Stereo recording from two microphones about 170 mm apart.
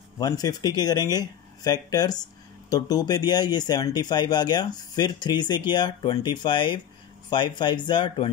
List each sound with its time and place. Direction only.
0.2 s speech: 20° left (ahead or behind)